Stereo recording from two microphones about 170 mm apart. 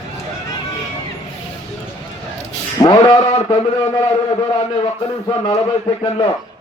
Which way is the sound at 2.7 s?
20° left (ahead or behind).